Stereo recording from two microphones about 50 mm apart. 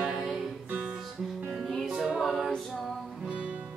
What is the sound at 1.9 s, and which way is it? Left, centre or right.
Music, centre.